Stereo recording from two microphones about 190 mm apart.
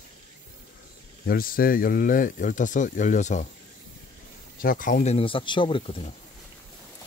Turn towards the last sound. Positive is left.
turn(degrees=30)  # may be behind; listen again after turning